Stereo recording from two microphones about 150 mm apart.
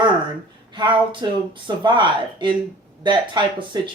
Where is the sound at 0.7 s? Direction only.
30° right (ahead or behind).